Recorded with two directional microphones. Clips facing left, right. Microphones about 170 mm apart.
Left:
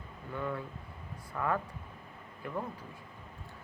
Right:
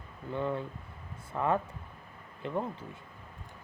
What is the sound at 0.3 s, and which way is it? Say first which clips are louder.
Speech: right 4 dB; 25° right (ahead or behind).